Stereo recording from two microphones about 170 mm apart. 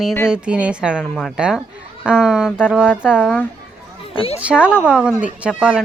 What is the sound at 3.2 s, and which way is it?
Speech, 10° left (ahead or behind).